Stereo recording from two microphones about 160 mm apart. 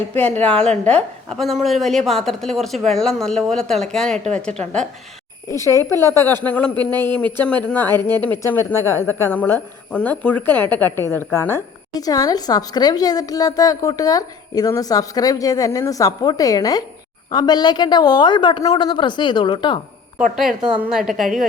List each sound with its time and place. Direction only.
0.2 s a woman's voice: 10° left (ahead or behind)
5.5 s a woman's voice: 20° left (ahead or behind)
20.6 s a woman's voice: 5° right (ahead or behind)